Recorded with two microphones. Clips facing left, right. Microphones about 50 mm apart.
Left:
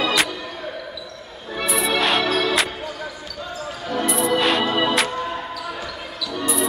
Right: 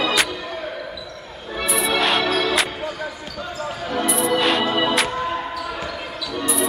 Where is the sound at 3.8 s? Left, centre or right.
Centre.